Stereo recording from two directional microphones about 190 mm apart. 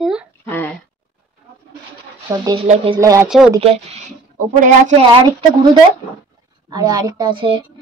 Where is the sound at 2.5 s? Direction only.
30° right (ahead or behind).